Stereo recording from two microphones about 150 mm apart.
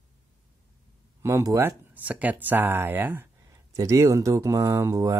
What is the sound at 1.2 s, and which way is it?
A man's voice, 20° right (ahead or behind).